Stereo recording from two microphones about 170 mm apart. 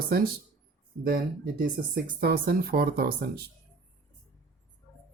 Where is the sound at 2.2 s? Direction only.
65° right (ahead or behind).